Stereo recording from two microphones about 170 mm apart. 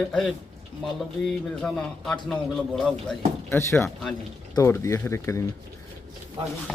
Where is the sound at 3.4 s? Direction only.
15° left (ahead or behind).